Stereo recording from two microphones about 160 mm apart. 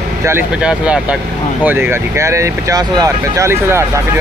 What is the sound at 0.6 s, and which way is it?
Speech, 5° right (ahead or behind).